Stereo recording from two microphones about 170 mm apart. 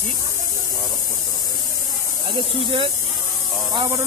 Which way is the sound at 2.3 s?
30° right (ahead or behind).